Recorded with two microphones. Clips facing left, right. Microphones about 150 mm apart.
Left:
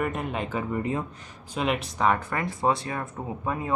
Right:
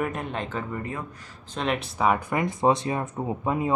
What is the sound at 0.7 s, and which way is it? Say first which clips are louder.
Speech: left 5 dB; 20° left (ahead or behind).